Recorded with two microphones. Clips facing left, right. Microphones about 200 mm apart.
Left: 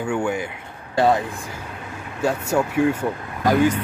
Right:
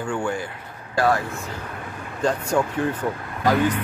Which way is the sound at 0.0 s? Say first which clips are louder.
Left 3 dB; 10° left (ahead or behind).